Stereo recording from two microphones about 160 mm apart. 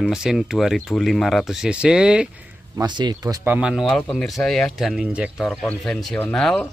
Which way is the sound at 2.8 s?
25° right (ahead or behind).